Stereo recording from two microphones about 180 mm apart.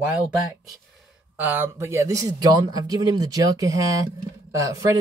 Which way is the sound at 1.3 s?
10° right (ahead or behind).